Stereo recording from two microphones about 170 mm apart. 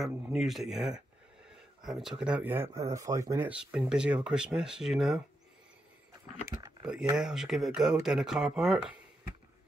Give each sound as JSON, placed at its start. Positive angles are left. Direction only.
{"t": 0.0, "sound": "speech", "side_deg": 0}
{"t": 6.4, "sound": "speech", "side_deg": -20}
{"t": 7.2, "sound": "speech", "side_deg": -5}